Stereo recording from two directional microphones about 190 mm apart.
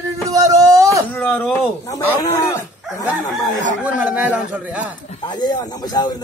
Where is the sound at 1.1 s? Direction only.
10° left (ahead or behind).